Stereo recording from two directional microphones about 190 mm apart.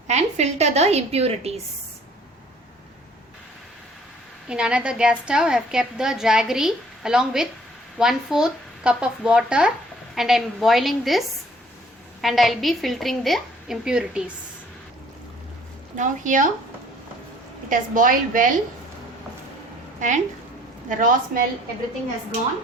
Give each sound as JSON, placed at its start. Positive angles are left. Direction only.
{"t": 0.1, "sound": "a woman's voice", "side_deg": -35}
{"t": 4.4, "sound": "a woman's voice", "side_deg": -5}
{"t": 12.2, "sound": "a woman's voice", "side_deg": 0}
{"t": 16.0, "sound": "a woman's voice", "side_deg": -45}
{"t": 17.7, "sound": "a woman's voice", "side_deg": -45}
{"t": 20.0, "sound": "a woman's voice", "side_deg": -40}